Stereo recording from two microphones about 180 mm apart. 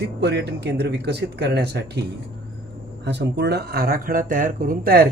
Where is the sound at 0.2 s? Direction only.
65° right (ahead or behind).